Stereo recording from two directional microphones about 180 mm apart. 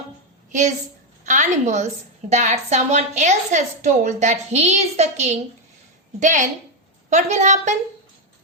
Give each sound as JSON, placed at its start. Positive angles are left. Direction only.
{"t": 1.2, "sound": "a woman's voice", "side_deg": -40}